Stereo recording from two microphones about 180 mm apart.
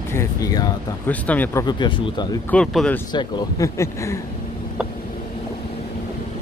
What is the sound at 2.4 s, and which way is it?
Speech, 5° left (ahead or behind).